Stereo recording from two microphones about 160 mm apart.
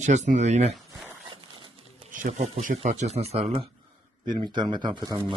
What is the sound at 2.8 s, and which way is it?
Speech, 45° right (ahead or behind).